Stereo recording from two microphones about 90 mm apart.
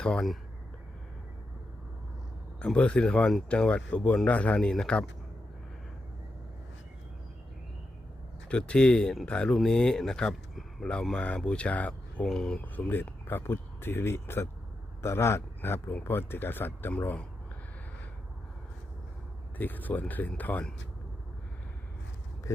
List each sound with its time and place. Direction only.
0.0 s speech: 10° left (ahead or behind)
2.6 s speech: 10° left (ahead or behind)
8.4 s speech: 10° left (ahead or behind)
12.6 s speech: 20° left (ahead or behind)
19.5 s speech: 20° left (ahead or behind)
22.5 s a sound: 35° left (ahead or behind)